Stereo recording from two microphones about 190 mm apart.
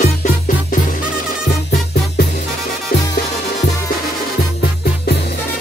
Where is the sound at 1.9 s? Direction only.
55° left (ahead or behind).